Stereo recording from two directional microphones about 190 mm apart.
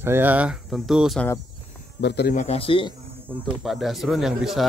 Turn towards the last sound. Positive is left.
turn(degrees=0)  # may be behind; listen again after turning